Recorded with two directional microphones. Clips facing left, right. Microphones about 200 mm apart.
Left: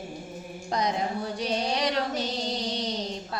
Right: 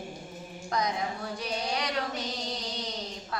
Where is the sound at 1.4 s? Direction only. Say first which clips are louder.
Left 6 dB; 30° left (ahead or behind).